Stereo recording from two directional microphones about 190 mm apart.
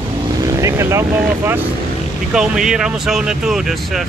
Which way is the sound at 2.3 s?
5° right (ahead or behind).